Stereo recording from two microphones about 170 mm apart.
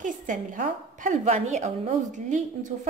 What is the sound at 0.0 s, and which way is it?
A woman's voice, 50° right (ahead or behind).